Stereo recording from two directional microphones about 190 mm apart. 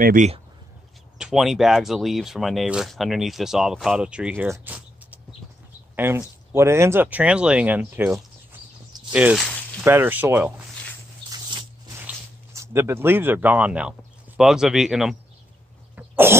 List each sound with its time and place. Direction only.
0.0 s speech: 45° right (ahead or behind)
1.1 s speech: centre (ahead or behind)
11.2 s a sound: 25° right (ahead or behind)
12.5 s speech: 15° right (ahead or behind)
16.0 s cough: 10° right (ahead or behind)